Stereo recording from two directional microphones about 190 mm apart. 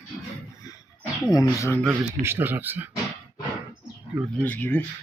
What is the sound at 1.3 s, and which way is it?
Speech, 15° left (ahead or behind).